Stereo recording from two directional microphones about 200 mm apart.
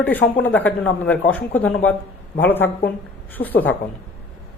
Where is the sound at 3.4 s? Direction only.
50° left (ahead or behind).